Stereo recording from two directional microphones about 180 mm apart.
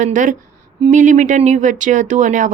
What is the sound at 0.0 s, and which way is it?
Speech, 45° right (ahead or behind).